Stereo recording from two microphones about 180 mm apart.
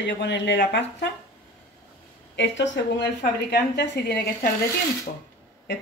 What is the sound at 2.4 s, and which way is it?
Speech, 90° left.